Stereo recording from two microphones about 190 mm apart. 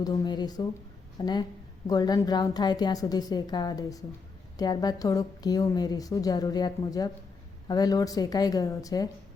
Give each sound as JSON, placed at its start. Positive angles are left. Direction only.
{"t": 0.0, "sound": "a woman's voice", "side_deg": 20}